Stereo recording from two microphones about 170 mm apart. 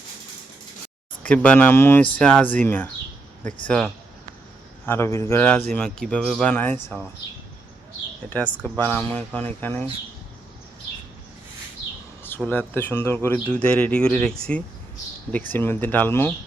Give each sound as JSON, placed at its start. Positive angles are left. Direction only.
{"t": 1.3, "sound": "speech", "side_deg": 10}
{"t": 8.6, "sound": "speech", "side_deg": 10}
{"t": 12.5, "sound": "speech", "side_deg": 10}